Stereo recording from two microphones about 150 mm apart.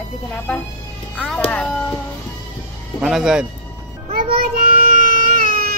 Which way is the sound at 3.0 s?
5° right (ahead or behind).